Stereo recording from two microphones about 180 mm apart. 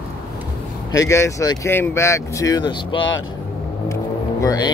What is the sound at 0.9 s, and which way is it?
Speech, 15° left (ahead or behind).